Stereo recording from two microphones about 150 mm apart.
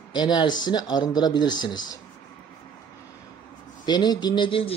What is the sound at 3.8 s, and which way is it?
Speech, 30° left (ahead or behind).